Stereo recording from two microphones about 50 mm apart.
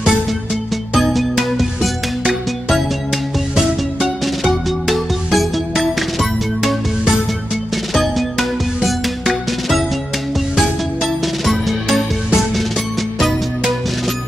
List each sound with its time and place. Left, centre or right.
0.9 s music: centre
13.2 s music: centre